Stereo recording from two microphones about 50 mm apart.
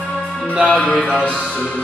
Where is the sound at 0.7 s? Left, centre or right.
Centre.